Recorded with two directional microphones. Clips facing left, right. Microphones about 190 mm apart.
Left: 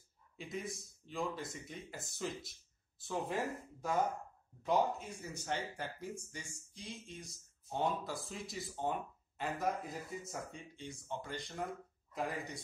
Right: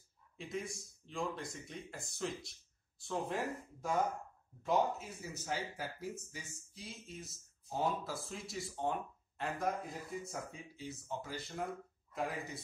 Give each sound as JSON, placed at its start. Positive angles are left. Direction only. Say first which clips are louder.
{"t": 0.4, "sound": "speech", "louder": "right 1 dB", "side_deg": 0}